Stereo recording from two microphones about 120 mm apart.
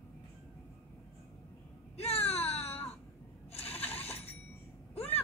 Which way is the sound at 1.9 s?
55° left (ahead or behind).